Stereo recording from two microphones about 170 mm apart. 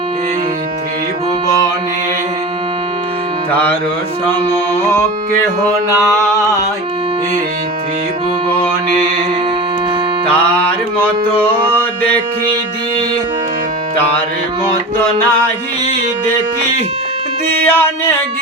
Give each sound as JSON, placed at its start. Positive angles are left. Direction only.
{"t": 3.5, "sound": "mantra", "side_deg": 10}
{"t": 5.9, "sound": "a sound", "side_deg": -15}
{"t": 10.3, "sound": "mantra", "side_deg": 10}
{"t": 17.7, "sound": "mantra", "side_deg": 15}